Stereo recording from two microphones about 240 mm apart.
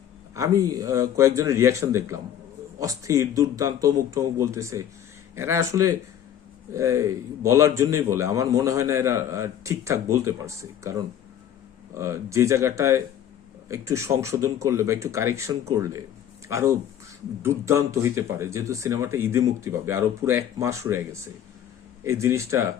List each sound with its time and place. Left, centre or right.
0.3 s a man's voice: centre